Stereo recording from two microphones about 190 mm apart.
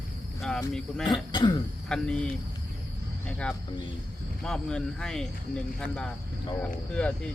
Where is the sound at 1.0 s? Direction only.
25° left (ahead or behind).